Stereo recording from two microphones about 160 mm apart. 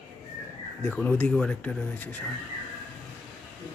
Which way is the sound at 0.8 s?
10° left (ahead or behind).